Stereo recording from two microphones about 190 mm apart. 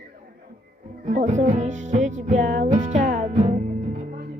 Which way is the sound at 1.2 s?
40° right (ahead or behind).